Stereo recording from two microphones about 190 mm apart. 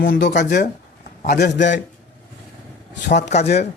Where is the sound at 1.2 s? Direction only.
55° left (ahead or behind).